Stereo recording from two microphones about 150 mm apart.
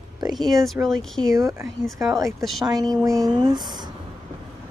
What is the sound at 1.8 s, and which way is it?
Speech, centre (ahead or behind).